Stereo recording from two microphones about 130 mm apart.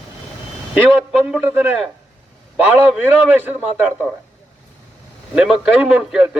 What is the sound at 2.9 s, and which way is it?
Speech, 10° right (ahead or behind).